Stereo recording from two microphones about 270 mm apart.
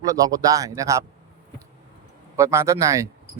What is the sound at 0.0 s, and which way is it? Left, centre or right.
Speech, centre.